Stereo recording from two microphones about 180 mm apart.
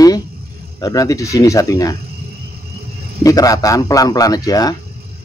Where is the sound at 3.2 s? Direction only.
20° left (ahead or behind).